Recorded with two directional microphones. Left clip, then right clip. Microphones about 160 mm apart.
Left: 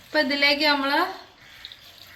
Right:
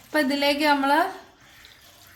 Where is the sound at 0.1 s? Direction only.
90° right.